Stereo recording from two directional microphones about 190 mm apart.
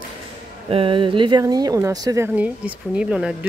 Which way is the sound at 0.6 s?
30° right (ahead or behind).